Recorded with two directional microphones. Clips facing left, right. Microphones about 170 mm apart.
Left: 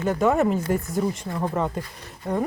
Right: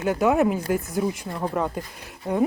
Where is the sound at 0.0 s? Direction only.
Centre (ahead or behind).